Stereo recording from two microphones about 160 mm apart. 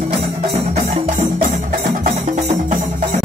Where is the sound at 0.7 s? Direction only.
50° right (ahead or behind).